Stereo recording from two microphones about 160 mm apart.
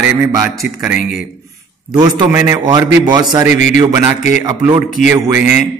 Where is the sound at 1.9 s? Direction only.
25° right (ahead or behind).